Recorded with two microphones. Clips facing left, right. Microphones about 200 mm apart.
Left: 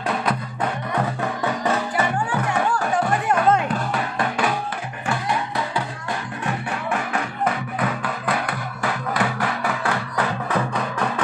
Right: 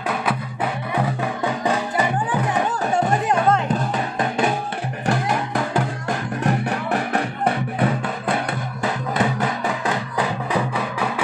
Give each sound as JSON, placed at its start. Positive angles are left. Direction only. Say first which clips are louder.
{"t": 0.1, "sound": "music", "louder": "even", "side_deg": -5}
{"t": 5.0, "sound": "music", "louder": "right 3 dB", "side_deg": -45}